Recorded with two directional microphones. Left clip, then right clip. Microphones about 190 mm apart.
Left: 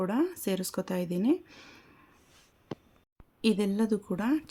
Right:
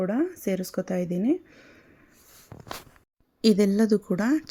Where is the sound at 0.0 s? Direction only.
15° right (ahead or behind).